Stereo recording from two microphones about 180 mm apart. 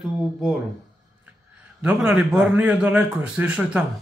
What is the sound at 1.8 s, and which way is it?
A man's voice, 5° right (ahead or behind).